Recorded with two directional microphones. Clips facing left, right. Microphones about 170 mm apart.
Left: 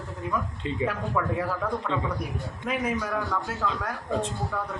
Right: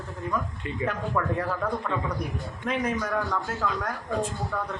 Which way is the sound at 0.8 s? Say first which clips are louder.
Even; 5° left (ahead or behind).